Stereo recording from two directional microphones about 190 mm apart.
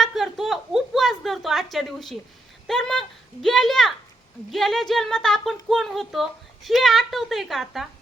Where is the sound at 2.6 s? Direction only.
5° left (ahead or behind).